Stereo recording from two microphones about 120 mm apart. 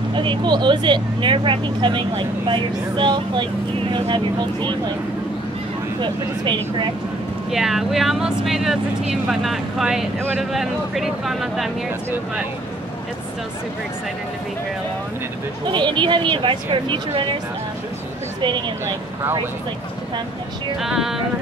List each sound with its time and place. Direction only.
0.1 s speech: 45° right (ahead or behind)
5.9 s speech: 40° right (ahead or behind)
7.5 s speech: centre (ahead or behind)
15.7 s speech: 40° right (ahead or behind)
20.8 s speech: 5° right (ahead or behind)